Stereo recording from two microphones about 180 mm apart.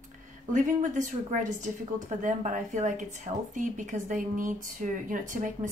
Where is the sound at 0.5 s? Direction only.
45° right (ahead or behind).